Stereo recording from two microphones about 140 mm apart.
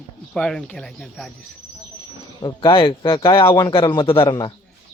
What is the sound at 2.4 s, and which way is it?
A man's voice, 35° left (ahead or behind).